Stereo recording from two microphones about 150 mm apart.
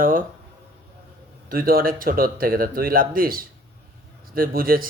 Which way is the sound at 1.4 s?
80° right.